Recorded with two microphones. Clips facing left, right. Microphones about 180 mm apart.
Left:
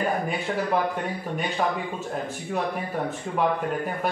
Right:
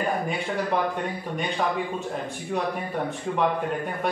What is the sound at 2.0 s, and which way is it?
Speech, 5° left (ahead or behind).